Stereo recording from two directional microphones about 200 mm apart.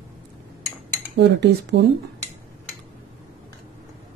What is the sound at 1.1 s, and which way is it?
Speech, 60° right (ahead or behind).